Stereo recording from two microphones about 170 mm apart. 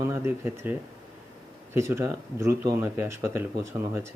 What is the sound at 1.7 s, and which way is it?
Speech, 15° right (ahead or behind).